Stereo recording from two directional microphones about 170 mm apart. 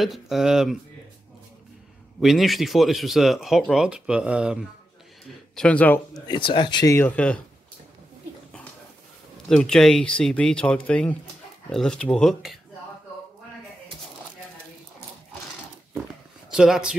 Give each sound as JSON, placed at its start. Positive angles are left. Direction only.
{"t": 0.0, "sound": "speech", "side_deg": 0}
{"t": 2.1, "sound": "speech", "side_deg": 0}
{"t": 5.6, "sound": "a man's voice", "side_deg": 10}
{"t": 6.2, "sound": "speech", "side_deg": 30}
{"t": 9.5, "sound": "speech", "side_deg": 5}
{"t": 16.5, "sound": "speech", "side_deg": -5}